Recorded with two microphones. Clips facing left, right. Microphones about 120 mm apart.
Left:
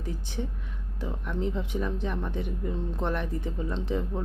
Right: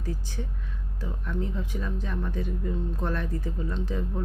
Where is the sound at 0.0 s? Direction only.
20° left (ahead or behind).